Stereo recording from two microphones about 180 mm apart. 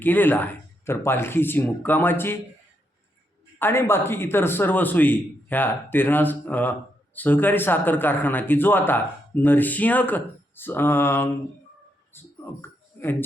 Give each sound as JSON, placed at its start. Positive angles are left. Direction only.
{"t": 0.0, "sound": "a man's voice", "side_deg": 10}
{"t": 3.6, "sound": "a man's voice", "side_deg": 15}
{"t": 12.6, "sound": "a sound", "side_deg": 10}